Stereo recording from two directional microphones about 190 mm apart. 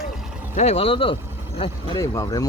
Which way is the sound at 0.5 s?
35° left (ahead or behind).